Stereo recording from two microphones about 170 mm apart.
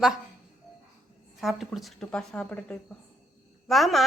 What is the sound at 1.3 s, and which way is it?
A woman's voice, centre (ahead or behind).